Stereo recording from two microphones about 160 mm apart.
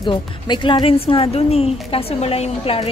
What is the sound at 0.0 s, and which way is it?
Speech, 30° left (ahead or behind).